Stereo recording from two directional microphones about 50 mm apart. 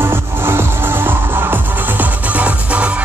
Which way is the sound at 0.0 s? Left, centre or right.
Right.